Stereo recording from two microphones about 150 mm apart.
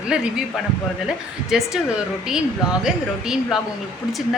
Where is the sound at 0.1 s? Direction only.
5° right (ahead or behind).